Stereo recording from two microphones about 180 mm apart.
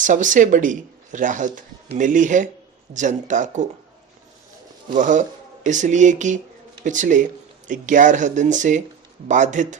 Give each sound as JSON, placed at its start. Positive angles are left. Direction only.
{"t": 0.0, "sound": "speech", "side_deg": -45}
{"t": 4.9, "sound": "speech", "side_deg": -45}